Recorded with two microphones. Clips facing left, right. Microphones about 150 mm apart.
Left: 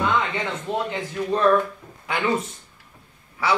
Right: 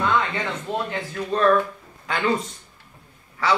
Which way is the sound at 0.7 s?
20° left (ahead or behind).